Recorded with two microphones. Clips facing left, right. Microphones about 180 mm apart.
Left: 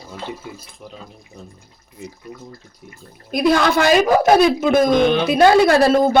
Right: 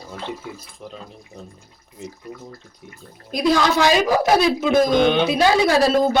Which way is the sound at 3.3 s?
60° left (ahead or behind).